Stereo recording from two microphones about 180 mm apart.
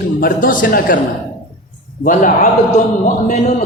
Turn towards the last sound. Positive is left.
turn(degrees=45)  # may be behind; listen again after turning